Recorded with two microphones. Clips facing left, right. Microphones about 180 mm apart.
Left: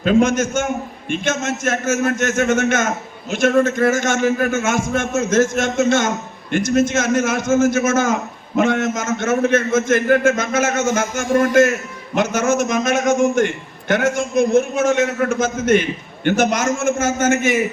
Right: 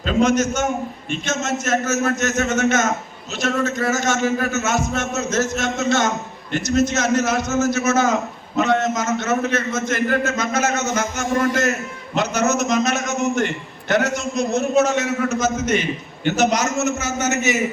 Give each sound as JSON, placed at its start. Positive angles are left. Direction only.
{"t": 0.0, "sound": "a man's voice", "side_deg": 50}